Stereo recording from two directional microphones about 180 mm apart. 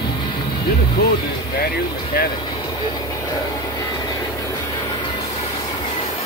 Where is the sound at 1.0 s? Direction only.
55° left (ahead or behind).